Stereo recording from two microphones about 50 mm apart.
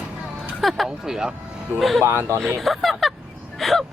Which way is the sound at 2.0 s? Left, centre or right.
Right.